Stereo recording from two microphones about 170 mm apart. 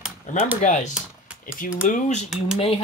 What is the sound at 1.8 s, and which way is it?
Speech, 50° left (ahead or behind).